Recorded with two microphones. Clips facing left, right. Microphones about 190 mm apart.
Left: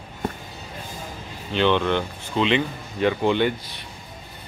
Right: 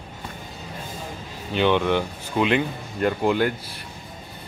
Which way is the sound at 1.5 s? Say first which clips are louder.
Even; 10° right (ahead or behind).